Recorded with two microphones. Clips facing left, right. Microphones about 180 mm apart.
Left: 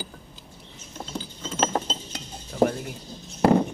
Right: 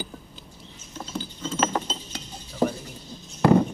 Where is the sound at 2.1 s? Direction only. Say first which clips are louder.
Left 2 dB; 55° left (ahead or behind).